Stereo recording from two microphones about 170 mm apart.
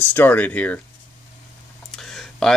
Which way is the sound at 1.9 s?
Centre (ahead or behind).